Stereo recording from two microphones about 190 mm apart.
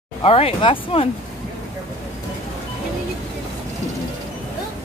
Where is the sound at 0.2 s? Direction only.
30° left (ahead or behind).